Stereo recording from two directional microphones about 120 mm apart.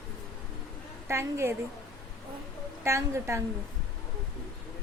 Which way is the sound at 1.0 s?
20° right (ahead or behind).